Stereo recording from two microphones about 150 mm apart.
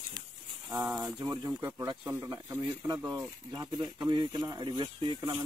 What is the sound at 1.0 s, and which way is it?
Speech, 25° right (ahead or behind).